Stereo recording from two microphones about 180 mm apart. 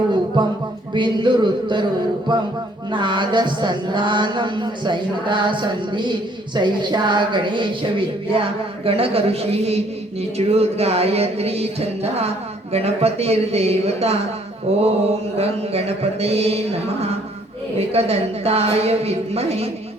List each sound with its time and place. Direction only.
0.9 s speech: 25° right (ahead or behind)
10.3 s music: 35° right (ahead or behind)